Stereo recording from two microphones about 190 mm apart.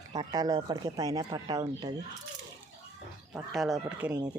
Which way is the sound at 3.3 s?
Centre (ahead or behind).